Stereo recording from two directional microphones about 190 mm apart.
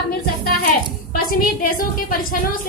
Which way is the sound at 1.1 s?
50° left (ahead or behind).